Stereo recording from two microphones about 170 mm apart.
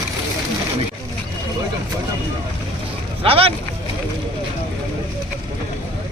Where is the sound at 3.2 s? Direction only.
35° right (ahead or behind).